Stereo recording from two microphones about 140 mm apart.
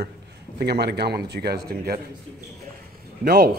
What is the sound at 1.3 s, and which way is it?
Speech, 90° right.